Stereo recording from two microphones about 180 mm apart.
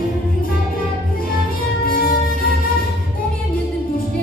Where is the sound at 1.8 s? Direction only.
55° left (ahead or behind).